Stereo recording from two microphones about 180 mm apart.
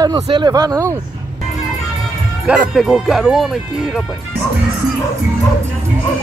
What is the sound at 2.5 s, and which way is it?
Speech, centre (ahead or behind).